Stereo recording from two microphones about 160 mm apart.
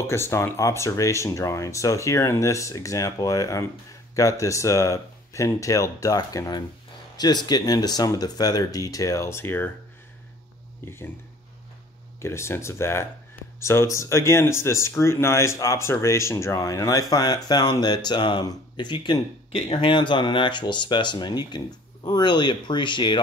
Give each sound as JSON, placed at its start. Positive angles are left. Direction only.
{"t": 0.0, "sound": "speech", "side_deg": 15}
{"t": 12.2, "sound": "speech", "side_deg": 15}